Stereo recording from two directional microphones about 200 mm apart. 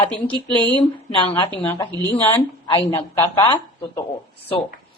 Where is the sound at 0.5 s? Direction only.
10° left (ahead or behind).